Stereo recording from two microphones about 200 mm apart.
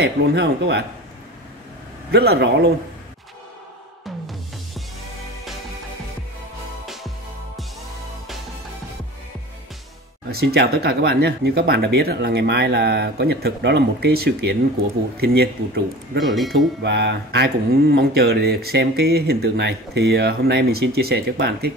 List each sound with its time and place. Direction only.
0.0 s speech: 55° right (ahead or behind)
2.0 s speech: 55° right (ahead or behind)
10.3 s speech: 55° right (ahead or behind)
16.3 s speech: centre (ahead or behind)
16.8 s speech: 60° right (ahead or behind)